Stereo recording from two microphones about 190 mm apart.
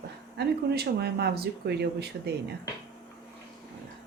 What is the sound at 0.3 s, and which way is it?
Speech, 60° right (ahead or behind).